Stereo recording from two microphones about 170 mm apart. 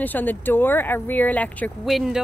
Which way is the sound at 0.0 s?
10° left (ahead or behind).